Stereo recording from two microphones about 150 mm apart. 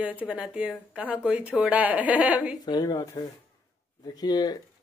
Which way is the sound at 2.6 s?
25° left (ahead or behind).